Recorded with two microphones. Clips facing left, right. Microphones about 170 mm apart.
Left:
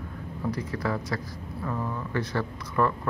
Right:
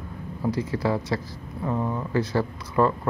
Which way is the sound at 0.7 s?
30° right (ahead or behind).